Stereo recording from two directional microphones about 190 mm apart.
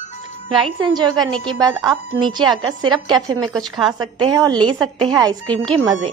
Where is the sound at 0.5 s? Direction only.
25° right (ahead or behind).